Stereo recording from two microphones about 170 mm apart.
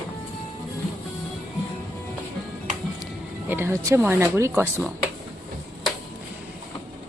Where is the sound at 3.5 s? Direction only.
15° right (ahead or behind).